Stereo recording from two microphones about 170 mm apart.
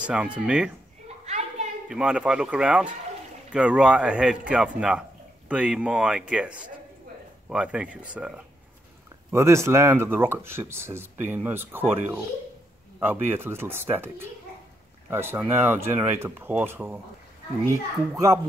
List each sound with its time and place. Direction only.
0.0 s speech: 5° right (ahead or behind)
1.2 s a sound: 40° right (ahead or behind)
1.9 s speech: 5° right (ahead or behind)
9.3 s speech: 15° right (ahead or behind)
13.0 s speech: 10° right (ahead or behind)
18.1 s speech: 20° right (ahead or behind)